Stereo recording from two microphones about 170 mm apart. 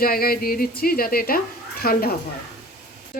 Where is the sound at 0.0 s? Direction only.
60° left (ahead or behind).